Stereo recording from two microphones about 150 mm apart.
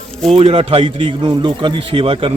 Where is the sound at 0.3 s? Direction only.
40° right (ahead or behind).